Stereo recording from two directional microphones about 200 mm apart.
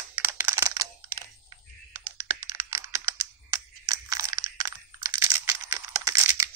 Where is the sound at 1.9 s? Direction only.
15° right (ahead or behind).